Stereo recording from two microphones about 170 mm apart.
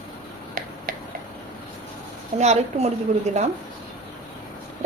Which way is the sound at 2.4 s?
40° right (ahead or behind).